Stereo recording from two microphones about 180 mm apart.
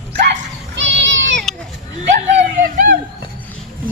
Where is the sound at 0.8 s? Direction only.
80° right.